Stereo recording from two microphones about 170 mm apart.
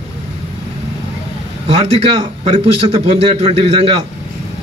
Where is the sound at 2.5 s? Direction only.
35° right (ahead or behind).